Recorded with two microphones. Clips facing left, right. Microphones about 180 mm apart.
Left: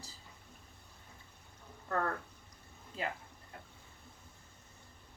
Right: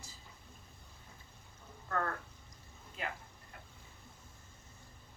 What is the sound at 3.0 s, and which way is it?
Speech, 30° left (ahead or behind).